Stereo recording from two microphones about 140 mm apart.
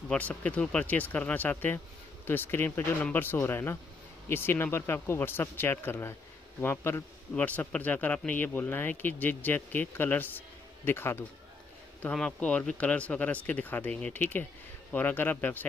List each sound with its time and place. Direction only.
0.1 s a man's voice: 10° left (ahead or behind)